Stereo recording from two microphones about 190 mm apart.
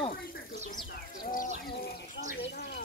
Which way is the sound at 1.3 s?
50° left (ahead or behind).